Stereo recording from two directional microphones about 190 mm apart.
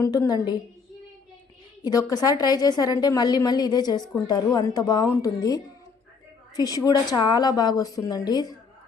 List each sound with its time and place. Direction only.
0.0 s a woman's voice: 20° left (ahead or behind)
1.8 s a woman's voice: 20° left (ahead or behind)
6.6 s a woman's voice: 20° left (ahead or behind)